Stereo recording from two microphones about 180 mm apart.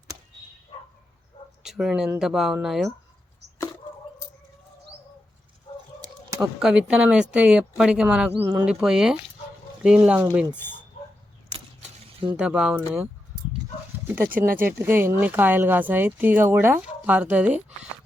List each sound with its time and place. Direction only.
1.6 s speech: centre (ahead or behind)
6.4 s speech: 5° right (ahead or behind)
11.4 s keys jangling: 30° right (ahead or behind)
12.4 s speech: 5° right (ahead or behind)
14.1 s speech: 10° right (ahead or behind)
14.3 s speech: 50° right (ahead or behind)
14.8 s speech: 10° right (ahead or behind)